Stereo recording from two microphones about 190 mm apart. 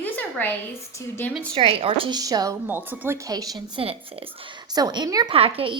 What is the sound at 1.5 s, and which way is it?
A woman's voice, 30° right (ahead or behind).